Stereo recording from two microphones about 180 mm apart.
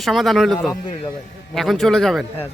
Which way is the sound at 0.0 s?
Centre (ahead or behind).